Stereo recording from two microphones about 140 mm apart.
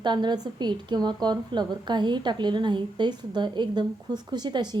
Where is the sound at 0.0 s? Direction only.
30° right (ahead or behind).